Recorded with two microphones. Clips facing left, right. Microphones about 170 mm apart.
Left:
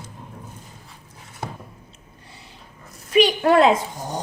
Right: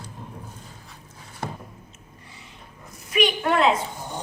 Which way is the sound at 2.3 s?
35° left (ahead or behind).